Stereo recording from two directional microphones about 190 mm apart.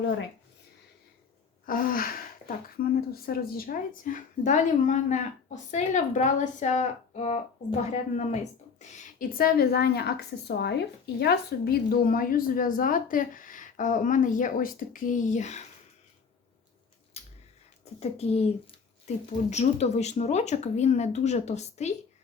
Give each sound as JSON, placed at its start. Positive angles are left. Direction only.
{"t": 1.6, "sound": "a woman's voice", "side_deg": 50}
{"t": 17.2, "sound": "a sound", "side_deg": 35}
{"t": 18.0, "sound": "speech", "side_deg": 35}